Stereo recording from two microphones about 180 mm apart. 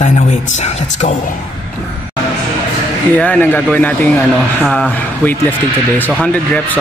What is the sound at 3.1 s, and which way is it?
Speech, 10° left (ahead or behind).